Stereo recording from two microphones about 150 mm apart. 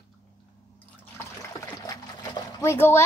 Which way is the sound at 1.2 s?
20° left (ahead or behind).